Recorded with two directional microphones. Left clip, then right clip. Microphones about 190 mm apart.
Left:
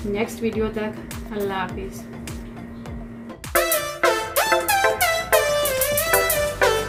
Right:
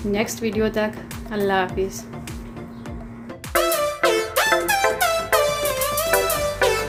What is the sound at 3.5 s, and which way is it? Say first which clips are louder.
Music: right 1 dB; centre (ahead or behind).